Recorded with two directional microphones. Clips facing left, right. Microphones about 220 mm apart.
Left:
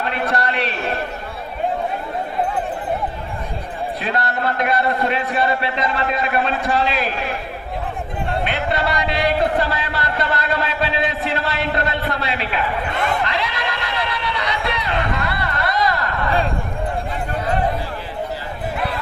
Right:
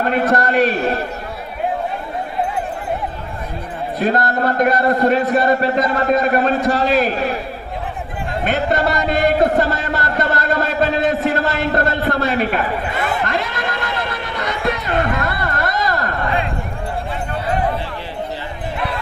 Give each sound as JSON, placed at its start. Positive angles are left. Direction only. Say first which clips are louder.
{"t": 0.0, "sound": "a man's voice", "louder": "right 5 dB", "side_deg": -45}
{"t": 4.0, "sound": "a man's voice", "louder": "right 6 dB", "side_deg": -45}
{"t": 8.4, "sound": "a sound", "louder": "right 7 dB", "side_deg": -45}
{"t": 13.2, "sound": "neigh", "louder": "right 2 dB", "side_deg": -50}